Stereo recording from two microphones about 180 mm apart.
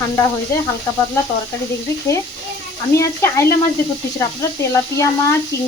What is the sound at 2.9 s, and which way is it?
Speech, 15° left (ahead or behind).